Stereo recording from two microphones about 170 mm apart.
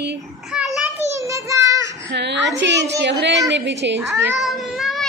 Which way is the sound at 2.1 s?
90° right.